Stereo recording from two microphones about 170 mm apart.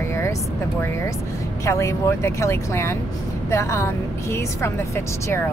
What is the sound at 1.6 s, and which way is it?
A woman's voice, 15° left (ahead or behind).